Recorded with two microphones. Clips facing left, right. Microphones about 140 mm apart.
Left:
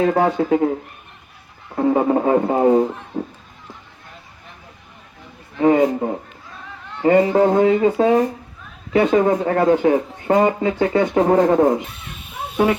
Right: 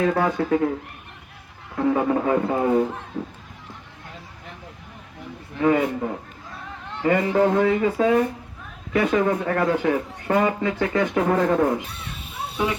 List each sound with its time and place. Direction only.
0.1 s speech: 35° left (ahead or behind)
1.7 s a sound: 35° left (ahead or behind)
2.5 s speech: 35° left (ahead or behind)
5.5 s speech: 35° left (ahead or behind)